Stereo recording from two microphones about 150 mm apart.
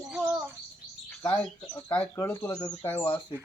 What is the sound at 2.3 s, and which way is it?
Speech, 25° left (ahead or behind).